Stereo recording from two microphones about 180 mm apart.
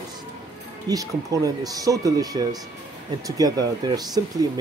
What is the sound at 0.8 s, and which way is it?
Speech, 20° right (ahead or behind).